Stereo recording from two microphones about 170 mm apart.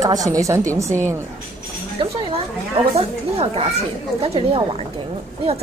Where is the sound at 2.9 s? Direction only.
35° right (ahead or behind).